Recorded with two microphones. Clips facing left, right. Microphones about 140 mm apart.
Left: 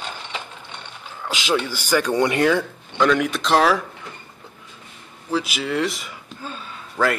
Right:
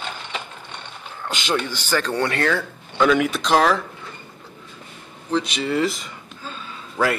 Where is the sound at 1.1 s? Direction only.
5° left (ahead or behind).